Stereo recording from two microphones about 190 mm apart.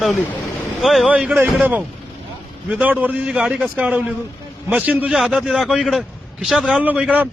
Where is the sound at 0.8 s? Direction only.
Centre (ahead or behind).